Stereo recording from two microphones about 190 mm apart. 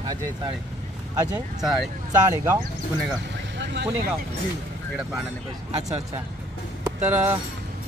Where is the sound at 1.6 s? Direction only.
Centre (ahead or behind).